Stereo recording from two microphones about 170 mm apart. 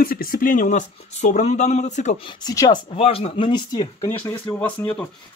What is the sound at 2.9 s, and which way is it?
Speech, 35° left (ahead or behind).